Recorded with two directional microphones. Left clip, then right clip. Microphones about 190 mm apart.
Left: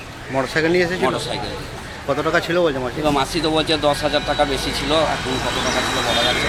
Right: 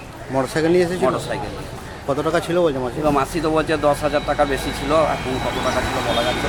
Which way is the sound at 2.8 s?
5° right (ahead or behind).